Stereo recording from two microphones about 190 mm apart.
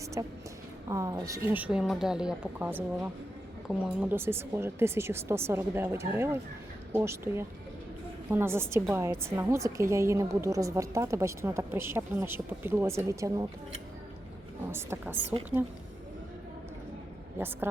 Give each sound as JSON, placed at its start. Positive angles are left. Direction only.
{"t": 0.2, "sound": "a woman's voice", "side_deg": -15}
{"t": 14.7, "sound": "a woman's voice", "side_deg": -10}